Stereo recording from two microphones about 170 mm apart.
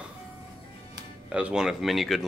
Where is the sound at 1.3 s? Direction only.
5° right (ahead or behind).